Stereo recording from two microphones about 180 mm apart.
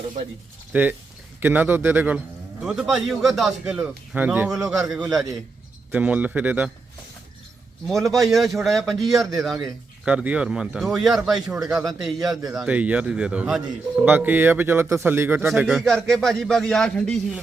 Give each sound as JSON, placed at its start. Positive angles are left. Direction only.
{"t": 0.7, "sound": "a man's voice", "side_deg": -10}
{"t": 7.9, "sound": "a man's voice", "side_deg": 0}
{"t": 15.4, "sound": "a man's voice", "side_deg": 0}